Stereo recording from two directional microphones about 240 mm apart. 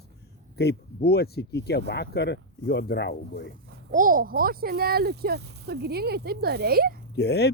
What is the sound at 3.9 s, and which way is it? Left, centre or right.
Speech, right.